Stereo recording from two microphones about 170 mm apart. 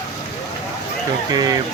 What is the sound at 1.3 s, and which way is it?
Speech, 20° right (ahead or behind).